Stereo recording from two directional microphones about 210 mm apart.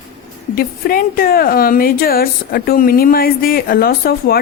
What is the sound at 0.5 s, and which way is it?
A woman's voice, 45° left (ahead or behind).